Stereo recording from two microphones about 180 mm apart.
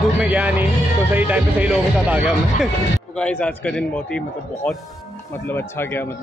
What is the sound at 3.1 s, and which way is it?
A man's voice, 5° left (ahead or behind).